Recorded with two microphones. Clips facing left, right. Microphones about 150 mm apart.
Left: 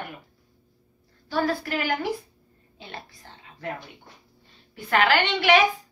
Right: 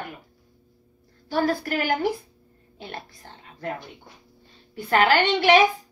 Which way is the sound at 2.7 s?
45° right (ahead or behind).